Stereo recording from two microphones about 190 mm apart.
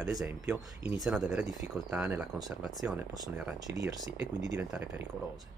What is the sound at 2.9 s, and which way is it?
Speech, 20° right (ahead or behind).